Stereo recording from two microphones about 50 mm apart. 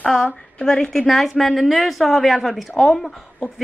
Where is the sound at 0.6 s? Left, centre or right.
Centre.